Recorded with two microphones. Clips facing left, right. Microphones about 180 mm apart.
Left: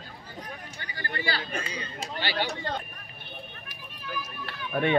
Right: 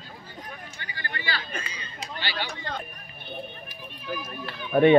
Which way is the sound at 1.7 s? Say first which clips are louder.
Left 3 dB; 45° left (ahead or behind).